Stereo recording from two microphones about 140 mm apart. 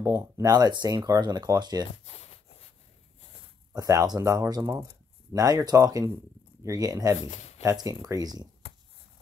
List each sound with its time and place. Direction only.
0.0 s speech: 25° right (ahead or behind)
2.0 s a sound: 50° left (ahead or behind)
3.7 s speech: 25° right (ahead or behind)
7.2 s speech: 55° left (ahead or behind)
7.6 s speech: 25° right (ahead or behind)